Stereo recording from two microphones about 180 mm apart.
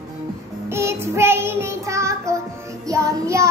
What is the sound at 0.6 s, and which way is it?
Child singing, 15° right (ahead or behind).